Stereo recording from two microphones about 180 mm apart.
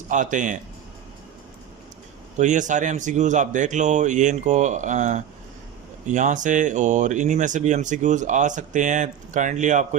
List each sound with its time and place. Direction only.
0.1 s speech: 45° right (ahead or behind)
2.4 s speech: 45° right (ahead or behind)